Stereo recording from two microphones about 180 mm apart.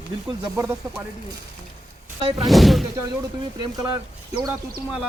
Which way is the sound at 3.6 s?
20° right (ahead or behind).